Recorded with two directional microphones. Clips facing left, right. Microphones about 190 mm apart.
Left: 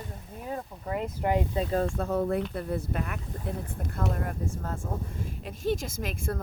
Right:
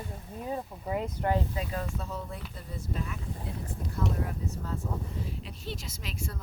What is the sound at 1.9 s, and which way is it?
Speech, 55° left (ahead or behind).